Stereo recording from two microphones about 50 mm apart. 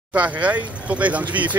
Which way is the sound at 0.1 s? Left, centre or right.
Right.